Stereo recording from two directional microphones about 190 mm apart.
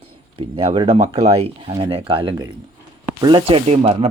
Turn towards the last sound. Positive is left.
turn(degrees=-35)  # may be behind; listen again after turning